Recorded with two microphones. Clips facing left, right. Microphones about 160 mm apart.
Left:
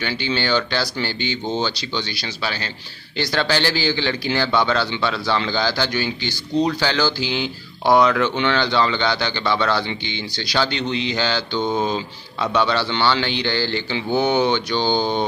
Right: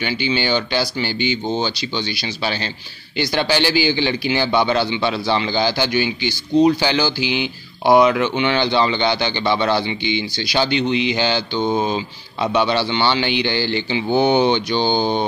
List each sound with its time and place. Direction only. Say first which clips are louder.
0.0 s speech: right 2 dB; 15° right (ahead or behind)